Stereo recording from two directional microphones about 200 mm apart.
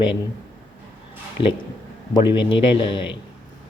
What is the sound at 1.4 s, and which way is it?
A man's voice, 25° left (ahead or behind).